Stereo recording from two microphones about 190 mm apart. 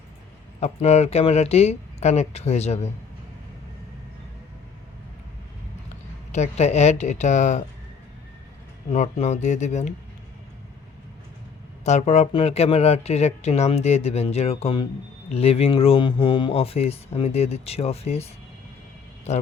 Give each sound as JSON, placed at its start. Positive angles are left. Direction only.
{"t": 0.6, "sound": "speech", "side_deg": 35}
{"t": 6.3, "sound": "speech", "side_deg": 35}
{"t": 8.9, "sound": "speech", "side_deg": 35}
{"t": 11.9, "sound": "speech", "side_deg": 35}
{"t": 19.3, "sound": "speech", "side_deg": 35}